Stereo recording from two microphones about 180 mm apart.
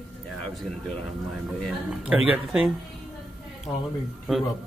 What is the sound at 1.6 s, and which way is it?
Speech, 5° right (ahead or behind).